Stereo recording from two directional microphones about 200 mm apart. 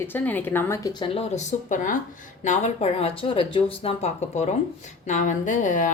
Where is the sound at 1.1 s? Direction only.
35° left (ahead or behind).